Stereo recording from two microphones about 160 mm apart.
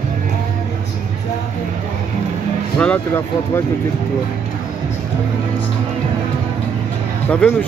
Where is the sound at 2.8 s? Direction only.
10° left (ahead or behind).